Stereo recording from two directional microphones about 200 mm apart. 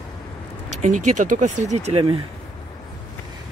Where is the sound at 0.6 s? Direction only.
35° right (ahead or behind).